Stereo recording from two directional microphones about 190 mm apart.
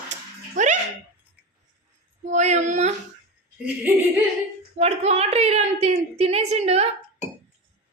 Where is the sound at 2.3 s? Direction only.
35° right (ahead or behind).